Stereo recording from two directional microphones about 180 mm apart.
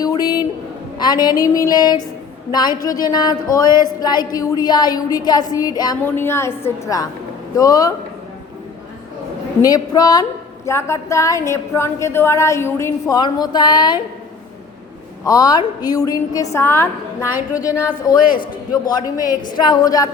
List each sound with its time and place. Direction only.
0.0 s a sound: 20° left (ahead or behind)
0.9 s a woman's voice: 25° left (ahead or behind)
9.6 s a woman's voice: 20° left (ahead or behind)
15.2 s a woman's voice: 20° left (ahead or behind)